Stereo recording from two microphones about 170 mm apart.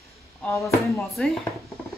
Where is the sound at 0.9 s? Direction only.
Centre (ahead or behind).